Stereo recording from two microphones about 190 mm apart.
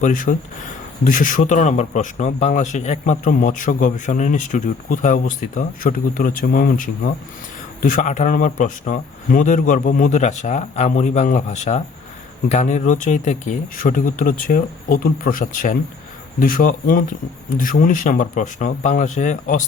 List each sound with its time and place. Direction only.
0.0 s speech: 45° left (ahead or behind)